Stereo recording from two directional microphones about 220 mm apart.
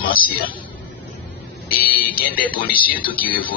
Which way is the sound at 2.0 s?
40° left (ahead or behind).